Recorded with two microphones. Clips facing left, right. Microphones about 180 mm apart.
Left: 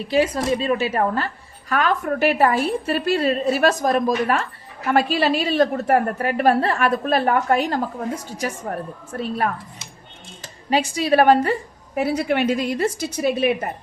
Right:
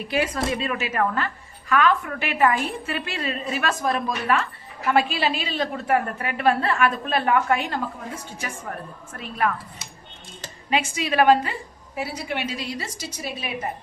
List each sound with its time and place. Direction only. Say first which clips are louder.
0.1 s a woman's voice: left 5 dB; 30° left (ahead or behind)
10.7 s a woman's voice: left 6 dB; 35° left (ahead or behind)
11.9 s a woman's voice: left 9 dB; 60° left (ahead or behind)